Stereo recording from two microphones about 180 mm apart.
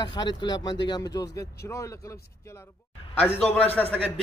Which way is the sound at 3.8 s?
5° left (ahead or behind).